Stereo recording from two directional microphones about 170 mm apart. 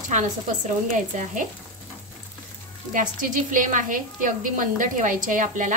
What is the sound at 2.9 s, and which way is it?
A woman's voice, 50° right (ahead or behind).